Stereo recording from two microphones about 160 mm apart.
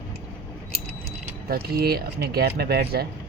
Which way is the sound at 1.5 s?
80° right.